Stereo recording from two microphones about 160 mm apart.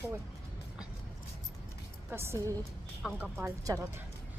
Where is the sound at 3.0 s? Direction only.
5° right (ahead or behind).